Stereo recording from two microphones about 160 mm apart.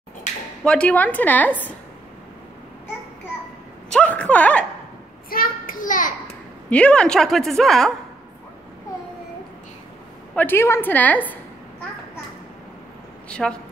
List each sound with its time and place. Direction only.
0.7 s a woman's voice: 10° left (ahead or behind)
3.9 s a woman's voice: 10° left (ahead or behind)
5.3 s a child's voice: 60° left (ahead or behind)
6.7 s a woman's voice: 5° left (ahead or behind)
10.3 s a woman's voice: 10° left (ahead or behind)
13.3 s a woman's voice: 5° left (ahead or behind)